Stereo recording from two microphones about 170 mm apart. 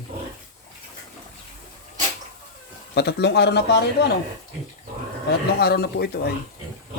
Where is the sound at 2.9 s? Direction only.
75° left (ahead or behind).